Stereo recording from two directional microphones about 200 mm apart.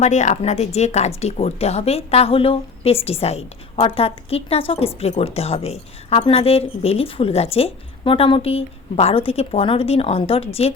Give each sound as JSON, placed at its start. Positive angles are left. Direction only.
{"t": 0.0, "sound": "speech", "side_deg": 35}